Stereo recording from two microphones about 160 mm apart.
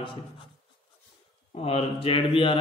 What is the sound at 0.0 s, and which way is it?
Mantra, 30° left (ahead or behind).